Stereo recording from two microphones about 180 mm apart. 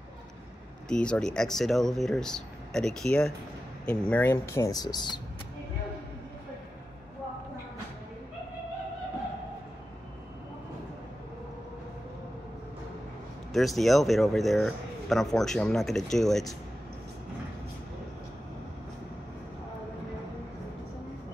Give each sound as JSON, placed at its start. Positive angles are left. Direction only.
{"t": 0.8, "sound": "speech", "side_deg": 5}
{"t": 4.1, "sound": "speech", "side_deg": 15}
{"t": 13.5, "sound": "speech", "side_deg": 0}